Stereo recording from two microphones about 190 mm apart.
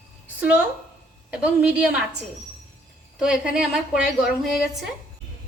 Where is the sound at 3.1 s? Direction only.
5° right (ahead or behind).